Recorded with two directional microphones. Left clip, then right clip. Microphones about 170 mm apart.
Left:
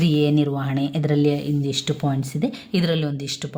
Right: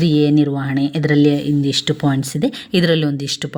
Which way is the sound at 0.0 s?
10° right (ahead or behind).